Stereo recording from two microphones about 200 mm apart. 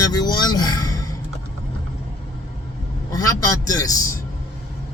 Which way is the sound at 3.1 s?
20° left (ahead or behind).